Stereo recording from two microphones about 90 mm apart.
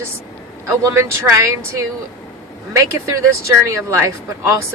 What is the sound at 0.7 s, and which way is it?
Speech, 30° right (ahead or behind).